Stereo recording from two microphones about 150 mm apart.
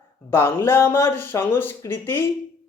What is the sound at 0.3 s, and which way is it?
Speech, 15° left (ahead or behind).